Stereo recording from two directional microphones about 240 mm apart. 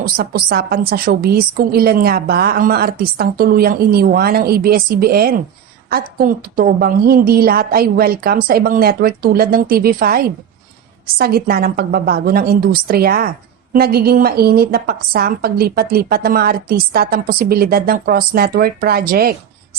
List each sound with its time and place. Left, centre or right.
0.0 s a woman's voice: right